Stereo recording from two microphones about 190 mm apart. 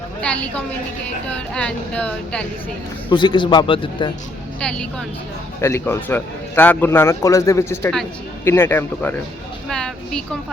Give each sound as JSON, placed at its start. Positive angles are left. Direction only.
{"t": 0.2, "sound": "a man's voice", "side_deg": 5}
{"t": 3.1, "sound": "a man's voice", "side_deg": 25}
{"t": 4.6, "sound": "a man's voice", "side_deg": 5}
{"t": 9.6, "sound": "a sound", "side_deg": 5}